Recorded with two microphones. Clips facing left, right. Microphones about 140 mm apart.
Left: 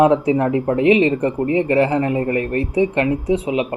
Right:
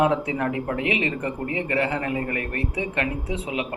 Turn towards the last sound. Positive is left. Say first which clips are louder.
# left 9 dB
turn(degrees=25)  # may be behind; listen again after turning